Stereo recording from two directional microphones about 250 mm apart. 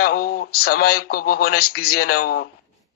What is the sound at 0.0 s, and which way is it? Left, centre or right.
A man's voice, left.